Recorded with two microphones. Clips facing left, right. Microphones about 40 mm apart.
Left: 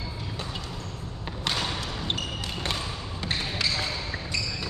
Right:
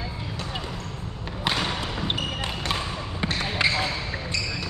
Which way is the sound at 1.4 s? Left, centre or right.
Right.